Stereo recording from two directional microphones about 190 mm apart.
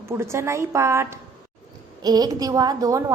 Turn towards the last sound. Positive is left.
turn(degrees=-15)  # may be behind; listen again after turning